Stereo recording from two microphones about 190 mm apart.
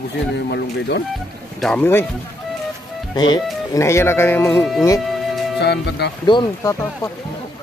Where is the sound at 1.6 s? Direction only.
5° left (ahead or behind).